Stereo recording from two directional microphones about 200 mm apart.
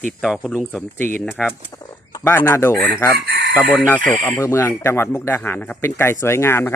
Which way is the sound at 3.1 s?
50° right (ahead or behind).